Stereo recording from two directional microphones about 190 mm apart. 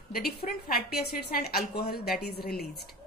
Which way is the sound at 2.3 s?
55° left (ahead or behind).